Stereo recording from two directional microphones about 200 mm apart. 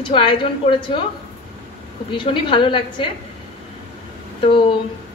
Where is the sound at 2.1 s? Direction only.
25° left (ahead or behind).